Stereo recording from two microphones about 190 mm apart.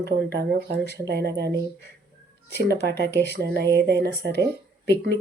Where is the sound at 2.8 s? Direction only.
60° right (ahead or behind).